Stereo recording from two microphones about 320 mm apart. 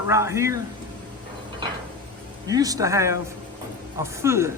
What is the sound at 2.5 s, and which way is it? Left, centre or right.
Speech, centre.